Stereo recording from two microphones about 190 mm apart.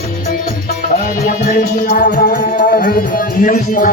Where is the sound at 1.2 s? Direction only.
50° left (ahead or behind).